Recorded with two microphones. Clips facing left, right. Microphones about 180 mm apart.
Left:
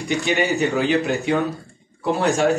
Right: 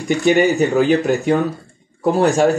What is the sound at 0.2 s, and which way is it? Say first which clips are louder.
Speech: right 8 dB; 40° right (ahead or behind).